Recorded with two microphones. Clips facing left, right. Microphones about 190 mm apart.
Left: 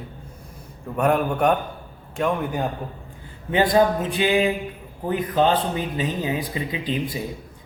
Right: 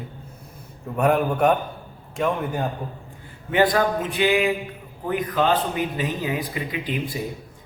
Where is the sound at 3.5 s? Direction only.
25° left (ahead or behind).